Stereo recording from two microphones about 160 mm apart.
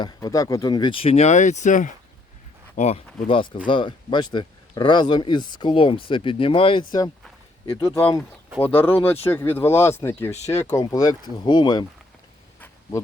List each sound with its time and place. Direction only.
0.0 s speech: 20° left (ahead or behind); by 3.0 s 45° left (ahead or behind)
3.2 s speech: 35° left (ahead or behind)
7.8 s speech: 20° left (ahead or behind)
10.3 s speech: 45° left (ahead or behind)
10.7 s speech: 20° left (ahead or behind)
12.5 s a sound: 10° left (ahead or behind)